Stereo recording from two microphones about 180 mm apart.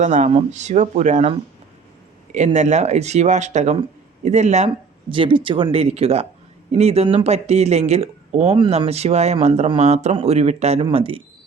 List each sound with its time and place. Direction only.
0.0 s speech: 45° right (ahead or behind)
2.3 s speech: 40° right (ahead or behind)
5.1 s speech: 30° right (ahead or behind)